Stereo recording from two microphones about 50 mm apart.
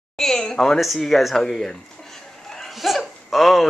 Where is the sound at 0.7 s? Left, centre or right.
Centre.